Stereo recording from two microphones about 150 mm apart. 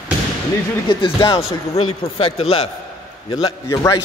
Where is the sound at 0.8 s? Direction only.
30° left (ahead or behind).